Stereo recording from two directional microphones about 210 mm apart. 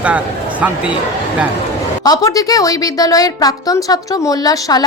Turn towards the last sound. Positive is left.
turn(degrees=20)  # may be behind; listen again after turning